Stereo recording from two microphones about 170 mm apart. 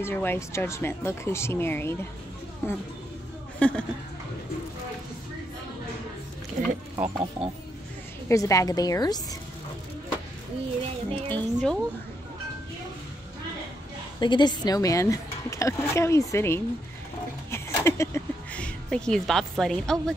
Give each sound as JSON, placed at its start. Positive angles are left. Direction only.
{"t": 0.0, "sound": "speech", "side_deg": 15}
{"t": 6.6, "sound": "speech", "side_deg": -55}
{"t": 7.0, "sound": "speech", "side_deg": -5}
{"t": 8.3, "sound": "speech", "side_deg": 20}
{"t": 11.1, "sound": "speech", "side_deg": 10}
{"t": 14.2, "sound": "speech", "side_deg": 25}
{"t": 17.5, "sound": "a sound", "side_deg": 15}